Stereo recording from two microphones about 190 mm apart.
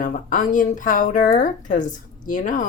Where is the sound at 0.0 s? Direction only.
45° left (ahead or behind).